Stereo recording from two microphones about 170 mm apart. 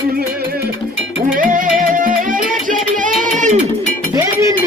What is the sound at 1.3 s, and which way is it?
Music, 50° right (ahead or behind).